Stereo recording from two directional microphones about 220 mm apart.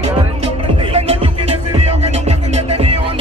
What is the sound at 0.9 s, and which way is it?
Music, 25° right (ahead or behind).